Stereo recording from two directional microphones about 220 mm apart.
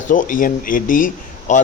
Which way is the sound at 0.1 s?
35° left (ahead or behind).